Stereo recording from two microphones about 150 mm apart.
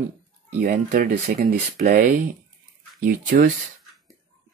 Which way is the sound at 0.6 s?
60° right (ahead or behind).